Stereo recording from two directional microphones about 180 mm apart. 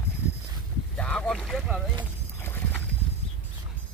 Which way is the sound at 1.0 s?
5° left (ahead or behind).